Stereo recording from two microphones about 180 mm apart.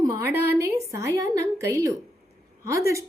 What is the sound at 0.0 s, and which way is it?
A woman's voice, 15° right (ahead or behind).